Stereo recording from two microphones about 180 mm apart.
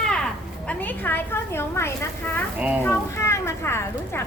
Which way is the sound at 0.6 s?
10° left (ahead or behind).